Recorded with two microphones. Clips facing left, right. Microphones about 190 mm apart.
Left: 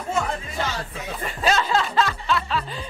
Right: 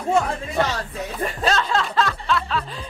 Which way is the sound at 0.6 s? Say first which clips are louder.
Right 7 dB; 60° right (ahead or behind).